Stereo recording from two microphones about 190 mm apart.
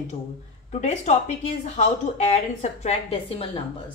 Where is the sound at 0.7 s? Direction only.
40° left (ahead or behind).